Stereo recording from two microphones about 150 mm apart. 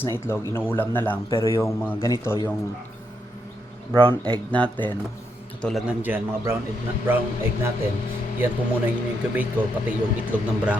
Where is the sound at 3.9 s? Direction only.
30° right (ahead or behind).